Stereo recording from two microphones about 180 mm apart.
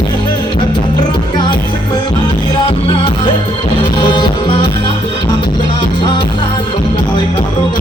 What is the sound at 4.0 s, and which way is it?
Music, 25° left (ahead or behind).